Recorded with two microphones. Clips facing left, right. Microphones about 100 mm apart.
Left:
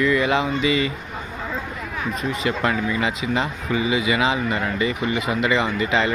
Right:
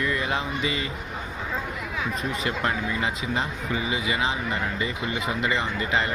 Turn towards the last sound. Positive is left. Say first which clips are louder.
# left 5 dB
turn(degrees=90)